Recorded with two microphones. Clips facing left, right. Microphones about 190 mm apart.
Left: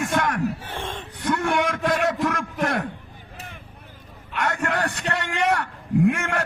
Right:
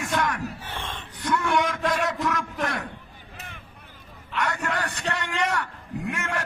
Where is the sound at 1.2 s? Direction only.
55° left (ahead or behind).